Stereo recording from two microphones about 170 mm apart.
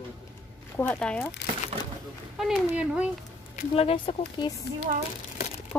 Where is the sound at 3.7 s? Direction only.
35° left (ahead or behind).